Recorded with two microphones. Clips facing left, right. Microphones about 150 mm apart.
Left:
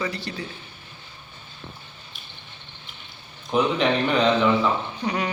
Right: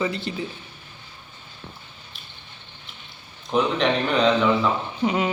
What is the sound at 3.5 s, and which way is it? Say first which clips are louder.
Speech: even; centre (ahead or behind).